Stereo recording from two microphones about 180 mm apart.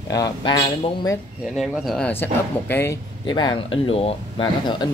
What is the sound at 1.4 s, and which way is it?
Speech, centre (ahead or behind).